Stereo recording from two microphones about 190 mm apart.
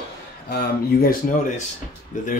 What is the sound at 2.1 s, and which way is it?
Speech, 40° left (ahead or behind).